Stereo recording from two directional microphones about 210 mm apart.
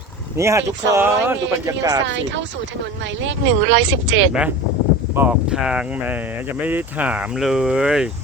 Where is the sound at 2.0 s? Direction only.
60° right (ahead or behind).